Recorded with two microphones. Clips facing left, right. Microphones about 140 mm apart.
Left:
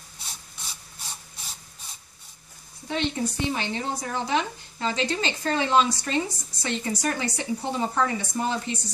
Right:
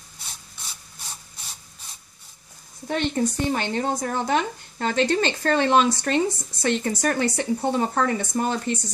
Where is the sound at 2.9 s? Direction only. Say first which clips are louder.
Right 4 dB; 50° right (ahead or behind).